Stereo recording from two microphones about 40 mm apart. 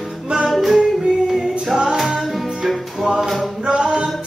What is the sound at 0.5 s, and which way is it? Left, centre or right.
Music, centre.